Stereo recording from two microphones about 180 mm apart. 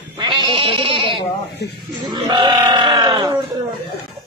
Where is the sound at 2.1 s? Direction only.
25° right (ahead or behind).